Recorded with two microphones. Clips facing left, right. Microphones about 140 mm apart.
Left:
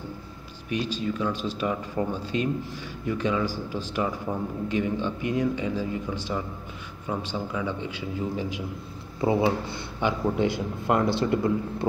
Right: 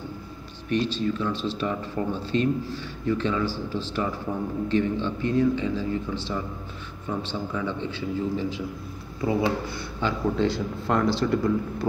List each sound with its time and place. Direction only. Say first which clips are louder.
0.7 s speech: right 3 dB; 10° left (ahead or behind)
9.2 s a man's voice: left 1 dB; 25° left (ahead or behind)